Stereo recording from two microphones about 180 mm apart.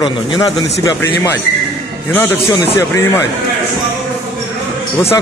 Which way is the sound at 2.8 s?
15° left (ahead or behind).